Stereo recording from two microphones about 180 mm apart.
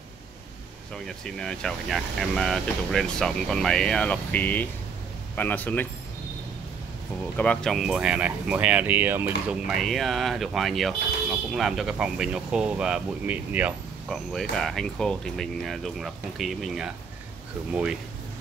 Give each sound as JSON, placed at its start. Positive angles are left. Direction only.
{"t": 1.0, "sound": "a man's voice", "side_deg": 5}
{"t": 7.3, "sound": "speech", "side_deg": 5}